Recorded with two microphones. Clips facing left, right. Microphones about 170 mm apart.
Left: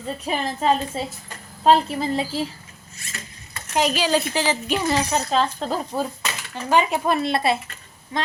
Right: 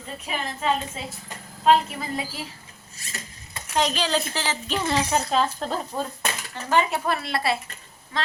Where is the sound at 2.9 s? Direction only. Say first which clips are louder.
Even; 35° right (ahead or behind).